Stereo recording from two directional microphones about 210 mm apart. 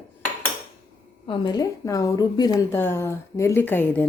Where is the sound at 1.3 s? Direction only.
20° left (ahead or behind).